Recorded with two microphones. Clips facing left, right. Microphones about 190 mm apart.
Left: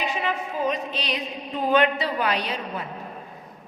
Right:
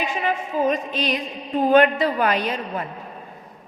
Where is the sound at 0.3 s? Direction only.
50° right (ahead or behind).